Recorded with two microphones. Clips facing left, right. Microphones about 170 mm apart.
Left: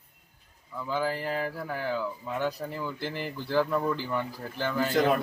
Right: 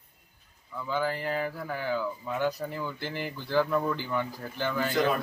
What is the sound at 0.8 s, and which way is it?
Speech, 5° left (ahead or behind).